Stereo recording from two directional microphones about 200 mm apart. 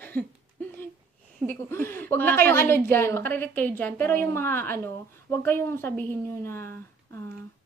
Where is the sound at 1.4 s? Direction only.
10° left (ahead or behind).